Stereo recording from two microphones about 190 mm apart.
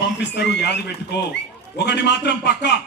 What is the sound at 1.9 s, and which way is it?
Speech, 65° left (ahead or behind).